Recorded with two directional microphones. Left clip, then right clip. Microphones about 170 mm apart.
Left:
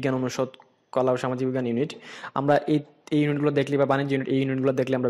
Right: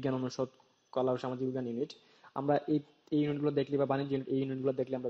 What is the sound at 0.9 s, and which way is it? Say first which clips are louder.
Speech: left 9 dB; 40° left (ahead or behind).